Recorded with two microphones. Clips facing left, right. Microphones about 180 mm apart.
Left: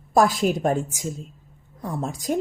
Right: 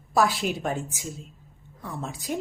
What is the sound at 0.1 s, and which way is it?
Speech, 45° left (ahead or behind).